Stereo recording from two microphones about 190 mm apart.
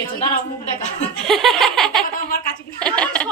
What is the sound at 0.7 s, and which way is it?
Chuckle, 40° left (ahead or behind).